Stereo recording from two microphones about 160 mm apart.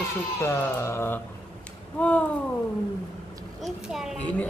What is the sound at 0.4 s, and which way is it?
A man's voice, 15° left (ahead or behind).